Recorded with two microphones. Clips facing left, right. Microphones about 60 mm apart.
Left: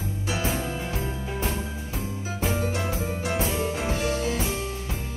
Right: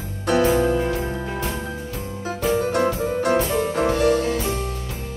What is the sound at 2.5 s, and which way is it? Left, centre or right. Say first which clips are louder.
Music: right 9 dB; right.